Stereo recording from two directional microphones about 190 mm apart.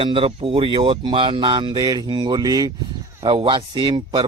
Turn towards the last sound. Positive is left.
turn(degrees=-25)  # may be behind; listen again after turning